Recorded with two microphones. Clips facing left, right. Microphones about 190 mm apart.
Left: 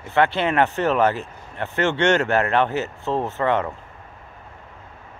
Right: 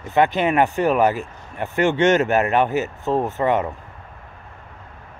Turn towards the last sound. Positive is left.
turn(degrees=-15)  # may be behind; listen again after turning